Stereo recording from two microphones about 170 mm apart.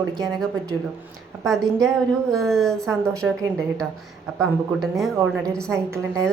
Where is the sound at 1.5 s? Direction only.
Centre (ahead or behind).